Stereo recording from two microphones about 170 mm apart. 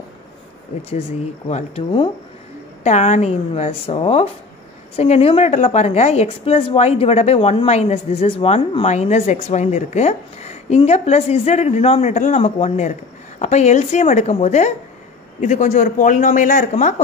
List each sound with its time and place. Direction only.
1.5 s a woman's voice: 30° left (ahead or behind)
2.8 s a woman's voice: 45° left (ahead or behind)